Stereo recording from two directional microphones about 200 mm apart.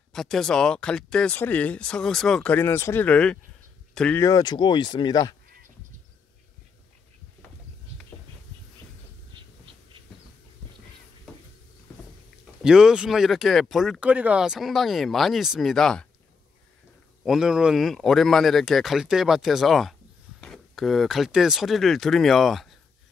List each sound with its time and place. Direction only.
0.1 s speech: centre (ahead or behind)
4.2 s speech: 20° left (ahead or behind)
12.6 s speech: 5° right (ahead or behind)
17.2 s speech: centre (ahead or behind)